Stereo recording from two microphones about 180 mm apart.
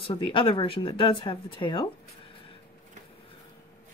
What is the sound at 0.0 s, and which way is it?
Speech, 30° left (ahead or behind).